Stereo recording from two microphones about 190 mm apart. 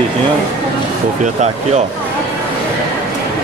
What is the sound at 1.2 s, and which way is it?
Speech, 35° right (ahead or behind).